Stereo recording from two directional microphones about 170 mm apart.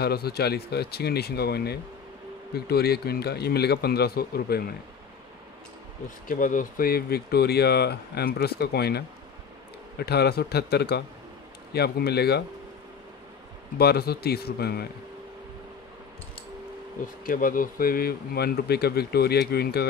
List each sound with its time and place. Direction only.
0.0 s speech: 70° left (ahead or behind)
6.2 s speech: 50° left (ahead or behind); by 12.4 s 70° left (ahead or behind)
13.7 s speech: 70° left (ahead or behind)
17.2 s speech: 55° left (ahead or behind)